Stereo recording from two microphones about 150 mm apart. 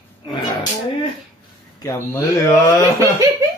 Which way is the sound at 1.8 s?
20° left (ahead or behind).